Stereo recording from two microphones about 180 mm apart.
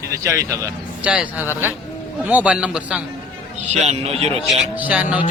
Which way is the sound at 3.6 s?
40° right (ahead or behind).